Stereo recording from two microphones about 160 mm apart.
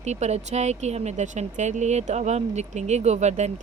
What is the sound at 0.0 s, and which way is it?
Speech, 45° right (ahead or behind).